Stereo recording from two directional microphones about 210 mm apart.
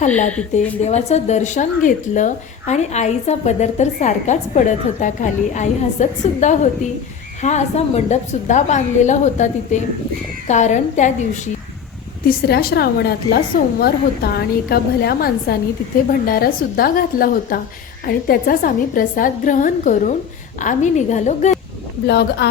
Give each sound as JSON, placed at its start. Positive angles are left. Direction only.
{"t": 0.5, "sound": "a woman's voice", "side_deg": 35}
{"t": 12.3, "sound": "a woman's voice", "side_deg": 45}
{"t": 22.0, "sound": "a woman's voice", "side_deg": 50}